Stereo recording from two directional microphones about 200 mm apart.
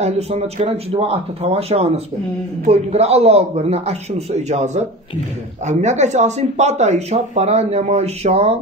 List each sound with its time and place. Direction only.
0.0 s speech: 30° right (ahead or behind)